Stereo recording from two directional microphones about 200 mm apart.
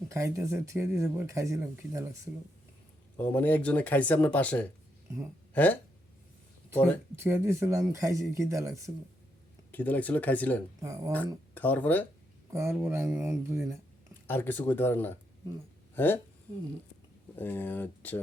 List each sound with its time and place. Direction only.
0.1 s speech: 15° right (ahead or behind)
3.2 s speech: 10° left (ahead or behind)
6.7 s speech: 5° left (ahead or behind)
7.2 s speech: 15° right (ahead or behind)
9.7 s speech: 10° left (ahead or behind)
10.8 s speech: 15° right (ahead or behind)
11.5 s speech: 10° left (ahead or behind)
12.5 s speech: 15° right (ahead or behind)
14.3 s speech: 10° left (ahead or behind)
17.3 s speech: 10° left (ahead or behind)